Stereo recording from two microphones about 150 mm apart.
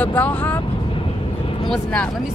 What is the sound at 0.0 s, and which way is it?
Speech, 10° left (ahead or behind).